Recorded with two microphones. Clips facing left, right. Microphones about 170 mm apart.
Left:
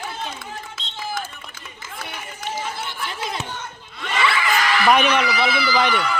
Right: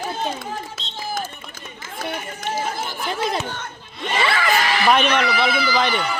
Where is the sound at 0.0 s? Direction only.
40° right (ahead or behind).